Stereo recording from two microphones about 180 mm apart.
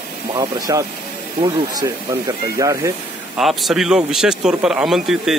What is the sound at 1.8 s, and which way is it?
Speech, 20° right (ahead or behind).